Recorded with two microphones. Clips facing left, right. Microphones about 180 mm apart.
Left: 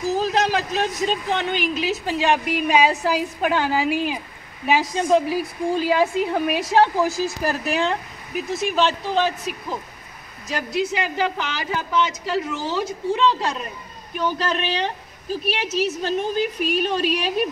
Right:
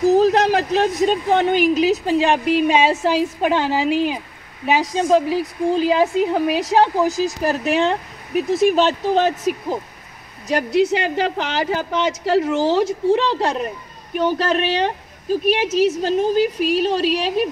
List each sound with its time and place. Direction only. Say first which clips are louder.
0.0 s a woman's voice: right 7 dB; 60° right (ahead or behind); by 8.9 s 35° right (ahead or behind)
9.1 s speech: right 5 dB; 45° right (ahead or behind)
10.5 s a woman's voice: right 7 dB; 70° right (ahead or behind)
16.0 s speech: right 5 dB; 35° right (ahead or behind)